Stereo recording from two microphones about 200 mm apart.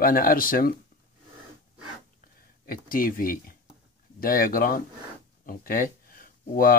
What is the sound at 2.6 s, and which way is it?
Speech, 45° left (ahead or behind).